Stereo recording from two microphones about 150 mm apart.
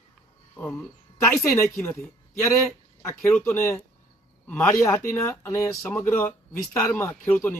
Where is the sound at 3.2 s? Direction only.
15° left (ahead or behind).